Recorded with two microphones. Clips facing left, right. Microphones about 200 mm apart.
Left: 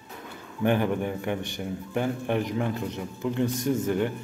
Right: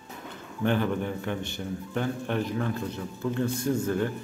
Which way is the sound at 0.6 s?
15° left (ahead or behind).